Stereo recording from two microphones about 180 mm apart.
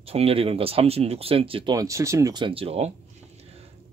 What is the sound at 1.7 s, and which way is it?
Speech, 15° right (ahead or behind).